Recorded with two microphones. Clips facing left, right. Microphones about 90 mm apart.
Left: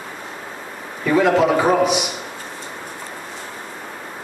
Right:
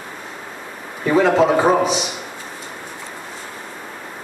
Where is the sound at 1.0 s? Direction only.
35° right (ahead or behind).